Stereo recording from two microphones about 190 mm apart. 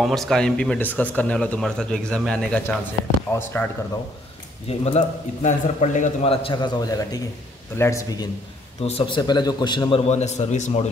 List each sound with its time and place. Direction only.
0.0 s a man's voice: centre (ahead or behind)
4.6 s a man's voice: 35° left (ahead or behind); by 8.3 s 20° left (ahead or behind)
8.8 s a man's voice: 30° left (ahead or behind)